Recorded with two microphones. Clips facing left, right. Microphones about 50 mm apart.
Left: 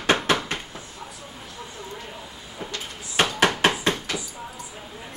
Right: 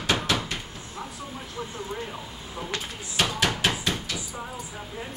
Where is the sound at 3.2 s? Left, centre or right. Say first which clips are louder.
Left 5 dB; left.